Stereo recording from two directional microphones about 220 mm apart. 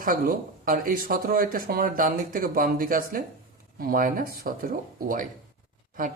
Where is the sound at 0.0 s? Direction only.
40° right (ahead or behind).